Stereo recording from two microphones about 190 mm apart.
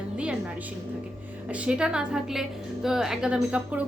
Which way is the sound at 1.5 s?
5° right (ahead or behind).